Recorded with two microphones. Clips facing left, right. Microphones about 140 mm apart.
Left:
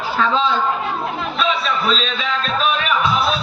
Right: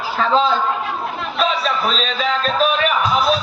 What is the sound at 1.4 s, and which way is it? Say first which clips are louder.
Music: right 2 dB; 40° right (ahead or behind).